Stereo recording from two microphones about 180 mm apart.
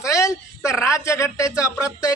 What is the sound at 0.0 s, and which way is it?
A man's voice, 15° left (ahead or behind).